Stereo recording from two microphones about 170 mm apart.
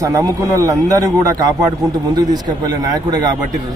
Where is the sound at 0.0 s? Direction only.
20° right (ahead or behind).